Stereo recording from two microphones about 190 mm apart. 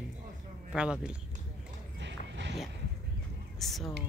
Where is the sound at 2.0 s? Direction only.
70° right (ahead or behind).